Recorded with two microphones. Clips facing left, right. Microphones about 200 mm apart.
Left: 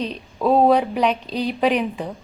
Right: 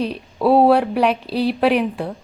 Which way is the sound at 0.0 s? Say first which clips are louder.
Right 3 dB; 10° right (ahead or behind).